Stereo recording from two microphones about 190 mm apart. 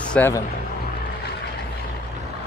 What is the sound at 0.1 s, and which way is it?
Speech, 10° left (ahead or behind).